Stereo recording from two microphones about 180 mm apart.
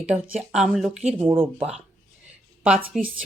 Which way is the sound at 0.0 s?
5° right (ahead or behind).